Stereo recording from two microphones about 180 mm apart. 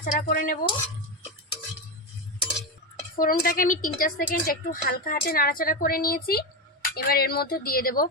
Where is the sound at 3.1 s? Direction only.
55° left (ahead or behind).